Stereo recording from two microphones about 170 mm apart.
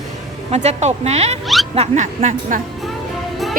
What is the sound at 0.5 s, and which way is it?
A woman's voice, 40° right (ahead or behind).